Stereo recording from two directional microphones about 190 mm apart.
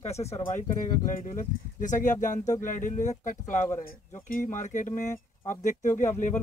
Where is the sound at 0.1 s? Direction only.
35° left (ahead or behind).